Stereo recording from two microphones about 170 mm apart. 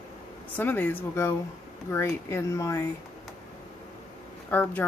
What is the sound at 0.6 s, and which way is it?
A woman's voice, 10° left (ahead or behind).